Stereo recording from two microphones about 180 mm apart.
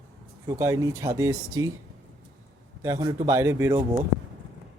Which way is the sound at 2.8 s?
20° right (ahead or behind).